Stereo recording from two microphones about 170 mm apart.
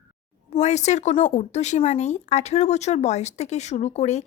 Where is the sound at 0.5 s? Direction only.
40° left (ahead or behind).